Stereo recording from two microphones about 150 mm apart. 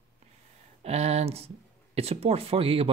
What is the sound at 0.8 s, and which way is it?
Speech, 45° right (ahead or behind).